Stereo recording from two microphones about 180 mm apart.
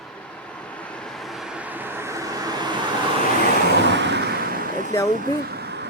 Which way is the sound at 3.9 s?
75° right (ahead or behind).